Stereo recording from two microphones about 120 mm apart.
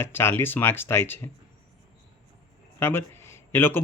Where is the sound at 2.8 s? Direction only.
20° left (ahead or behind).